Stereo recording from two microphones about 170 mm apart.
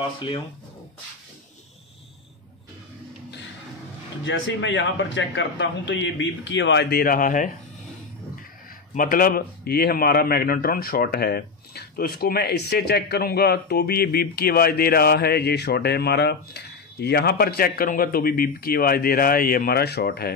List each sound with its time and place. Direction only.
4.2 s a man's voice: 90° left; by 7.5 s 50° left (ahead or behind)
8.9 s a man's voice: 55° left (ahead or behind)